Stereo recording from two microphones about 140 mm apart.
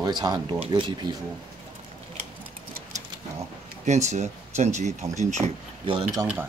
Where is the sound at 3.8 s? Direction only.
55° right (ahead or behind).